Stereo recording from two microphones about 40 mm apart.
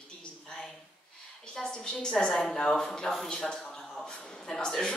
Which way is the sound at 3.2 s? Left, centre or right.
Centre.